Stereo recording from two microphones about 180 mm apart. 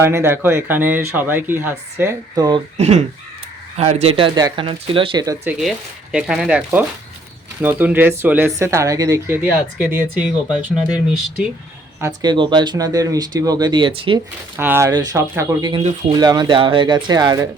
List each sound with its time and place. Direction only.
0.0 s speech: 15° right (ahead or behind)
2.7 s speech: 40° right (ahead or behind); by 5.4 s 20° right (ahead or behind)
5.5 s speech: 5° right (ahead or behind)
9.4 s speech: 5° right (ahead or behind)
11.9 s speech: 20° right (ahead or behind)
14.5 s speech: 10° right (ahead or behind)